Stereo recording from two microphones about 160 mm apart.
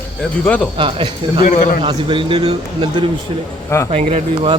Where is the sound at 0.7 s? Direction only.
35° right (ahead or behind).